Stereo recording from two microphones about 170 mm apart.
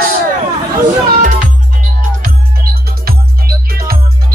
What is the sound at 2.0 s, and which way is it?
Music, 55° right (ahead or behind).